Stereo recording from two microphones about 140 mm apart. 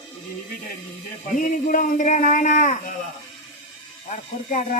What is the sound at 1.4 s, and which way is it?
A man's voice, 70° left (ahead or behind).